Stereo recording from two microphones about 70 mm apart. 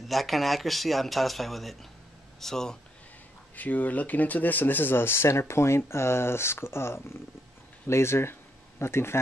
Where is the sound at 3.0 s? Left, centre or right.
Left.